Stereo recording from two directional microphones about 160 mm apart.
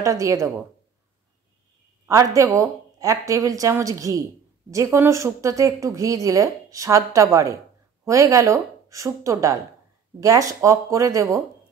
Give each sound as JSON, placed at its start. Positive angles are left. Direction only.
{"t": 0.0, "sound": "speech", "side_deg": -20}
{"t": 2.0, "sound": "speech", "side_deg": -20}